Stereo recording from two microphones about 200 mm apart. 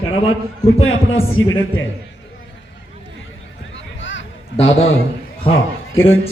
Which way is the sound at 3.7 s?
70° left (ahead or behind).